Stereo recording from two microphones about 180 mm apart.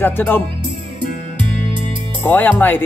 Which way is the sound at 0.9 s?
25° right (ahead or behind).